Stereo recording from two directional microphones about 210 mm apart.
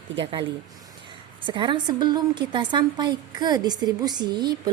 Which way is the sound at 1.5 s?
20° right (ahead or behind).